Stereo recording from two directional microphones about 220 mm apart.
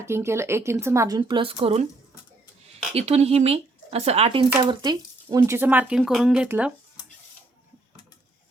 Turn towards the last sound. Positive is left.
turn(degrees=-5)  # may be behind; listen again after turning